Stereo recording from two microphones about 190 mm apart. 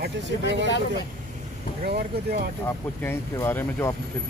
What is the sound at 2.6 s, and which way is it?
Speech, 15° left (ahead or behind).